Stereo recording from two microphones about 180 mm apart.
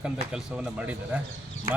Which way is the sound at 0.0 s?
5° right (ahead or behind).